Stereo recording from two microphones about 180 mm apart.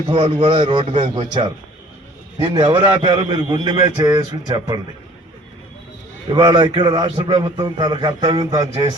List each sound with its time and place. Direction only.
0.1 s a man's voice: 30° right (ahead or behind)
6.3 s a man's voice: 25° right (ahead or behind)